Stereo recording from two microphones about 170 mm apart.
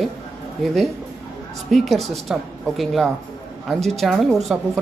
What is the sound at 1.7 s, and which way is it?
Speech, centre (ahead or behind).